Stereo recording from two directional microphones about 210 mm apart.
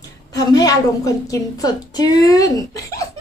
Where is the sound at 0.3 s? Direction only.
20° left (ahead or behind).